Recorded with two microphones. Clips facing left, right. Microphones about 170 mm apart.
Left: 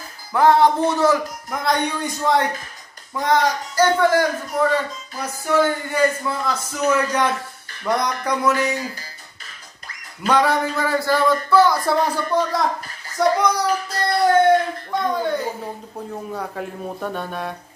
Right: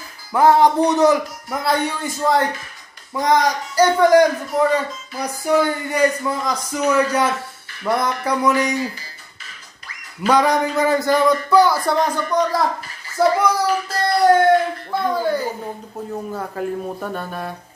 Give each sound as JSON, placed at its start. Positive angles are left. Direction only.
{"t": 0.3, "sound": "a man's voice", "side_deg": -10}
{"t": 1.5, "sound": "a man's voice", "side_deg": -5}
{"t": 10.2, "sound": "a man's voice", "side_deg": -15}
{"t": 11.8, "sound": "speech", "side_deg": 5}